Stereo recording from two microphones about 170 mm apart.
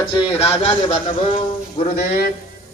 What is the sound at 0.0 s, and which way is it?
Speech, 30° left (ahead or behind).